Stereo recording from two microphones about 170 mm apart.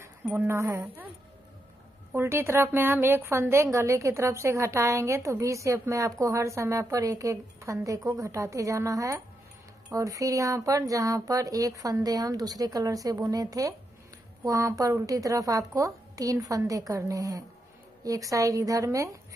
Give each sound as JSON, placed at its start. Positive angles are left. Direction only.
{"t": 0.0, "sound": "speech", "side_deg": -15}
{"t": 2.1, "sound": "a woman's voice", "side_deg": -15}